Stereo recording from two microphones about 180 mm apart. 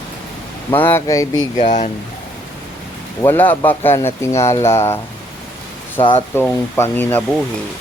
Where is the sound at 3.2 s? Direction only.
10° left (ahead or behind).